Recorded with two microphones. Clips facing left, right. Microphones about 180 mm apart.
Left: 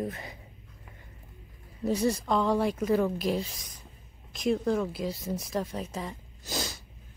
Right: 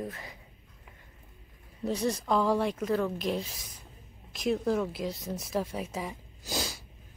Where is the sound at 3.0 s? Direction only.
15° left (ahead or behind).